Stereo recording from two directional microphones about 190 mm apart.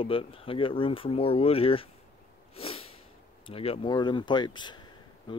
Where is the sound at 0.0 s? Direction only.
30° left (ahead or behind).